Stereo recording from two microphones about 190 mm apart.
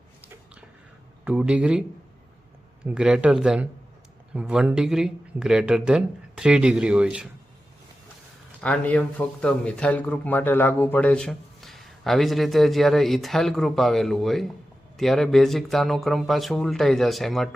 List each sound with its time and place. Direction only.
1.2 s speech: 5° right (ahead or behind)
2.8 s speech: 5° right (ahead or behind)
8.6 s speech: 5° left (ahead or behind)